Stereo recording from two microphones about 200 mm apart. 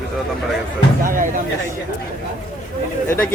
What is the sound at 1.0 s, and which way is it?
Speech, 40° right (ahead or behind).